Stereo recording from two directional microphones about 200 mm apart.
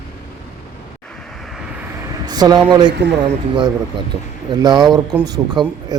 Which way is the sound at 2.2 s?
20° right (ahead or behind).